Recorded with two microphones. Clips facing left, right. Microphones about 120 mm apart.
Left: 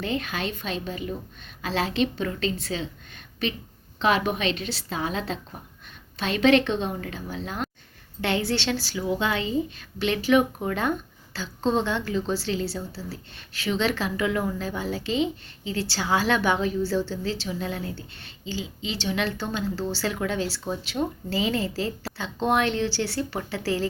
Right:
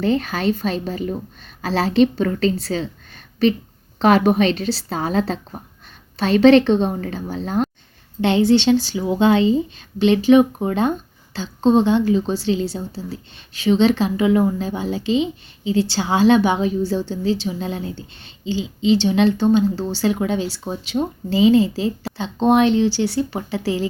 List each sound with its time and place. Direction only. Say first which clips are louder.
0.0 s a woman's voice: right 9 dB; 35° right (ahead or behind)
8.2 s a woman's voice: right 11 dB; 20° right (ahead or behind)